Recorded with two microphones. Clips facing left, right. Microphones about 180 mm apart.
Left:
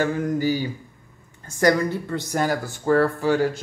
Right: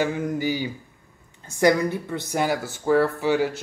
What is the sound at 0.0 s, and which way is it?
Speech, 15° right (ahead or behind).